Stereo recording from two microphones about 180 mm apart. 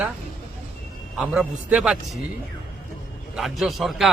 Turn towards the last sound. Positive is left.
turn(degrees=0)  # may be behind; listen again after turning